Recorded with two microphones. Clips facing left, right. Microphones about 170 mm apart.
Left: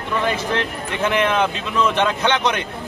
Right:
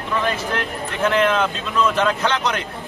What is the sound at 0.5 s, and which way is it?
A man's voice, 15° left (ahead or behind).